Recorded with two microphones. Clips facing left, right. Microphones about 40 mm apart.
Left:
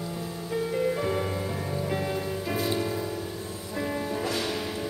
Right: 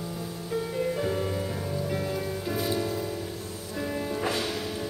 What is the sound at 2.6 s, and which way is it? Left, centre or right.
Music, centre.